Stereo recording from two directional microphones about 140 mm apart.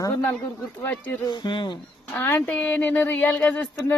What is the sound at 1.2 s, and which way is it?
Speech, 30° left (ahead or behind).